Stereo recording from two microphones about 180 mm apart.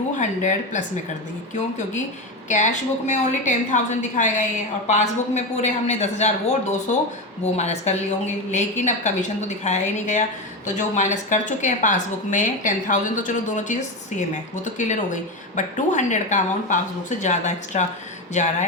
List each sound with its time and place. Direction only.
0.2 s a woman's voice: 45° left (ahead or behind)
2.5 s a woman's voice: 40° left (ahead or behind)